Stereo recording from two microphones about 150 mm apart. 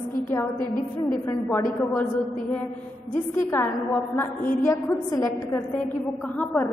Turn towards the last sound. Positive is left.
turn(degrees=10)  # may be behind; listen again after turning